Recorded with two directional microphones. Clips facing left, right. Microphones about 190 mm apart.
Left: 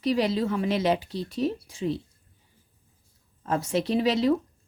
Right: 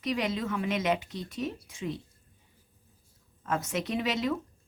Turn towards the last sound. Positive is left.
turn(degrees=30)  # may be behind; listen again after turning